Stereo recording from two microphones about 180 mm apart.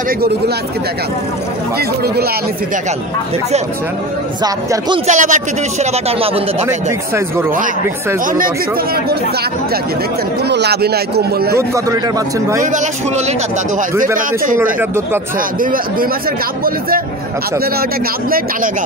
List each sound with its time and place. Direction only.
4.4 s speech: 25° right (ahead or behind)
5.0 s speech: 45° right (ahead or behind)
7.2 s speech: 15° right (ahead or behind)
10.5 s a man's voice: 65° right (ahead or behind)
11.5 s speech: 15° right (ahead or behind)
14.1 s a man's voice: 50° right (ahead or behind)
15.6 s a man's voice: 50° right (ahead or behind)